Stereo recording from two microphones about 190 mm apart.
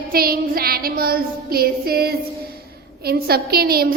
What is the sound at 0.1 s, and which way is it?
Child singing, 50° right (ahead or behind).